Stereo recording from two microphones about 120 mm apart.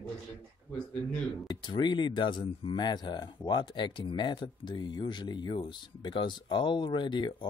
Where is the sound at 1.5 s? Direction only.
40° left (ahead or behind).